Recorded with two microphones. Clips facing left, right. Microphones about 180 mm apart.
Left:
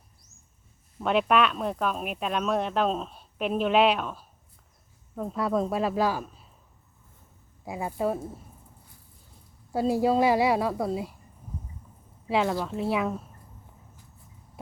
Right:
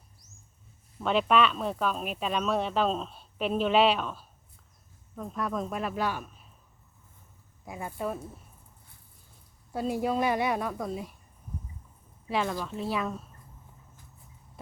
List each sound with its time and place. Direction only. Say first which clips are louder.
1.0 s speech: left 1 dB; 5° left (ahead or behind)
5.1 s a man's voice: left 6 dB; 25° left (ahead or behind)
7.6 s a woman's voice: left 6 dB; 25° left (ahead or behind)
10.1 s speech: left 5 dB; 30° left (ahead or behind)
12.3 s speech: left 4 dB; 25° left (ahead or behind)